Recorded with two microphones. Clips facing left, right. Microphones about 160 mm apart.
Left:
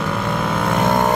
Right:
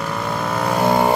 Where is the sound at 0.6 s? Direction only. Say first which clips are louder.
Right 2 dB; centre (ahead or behind).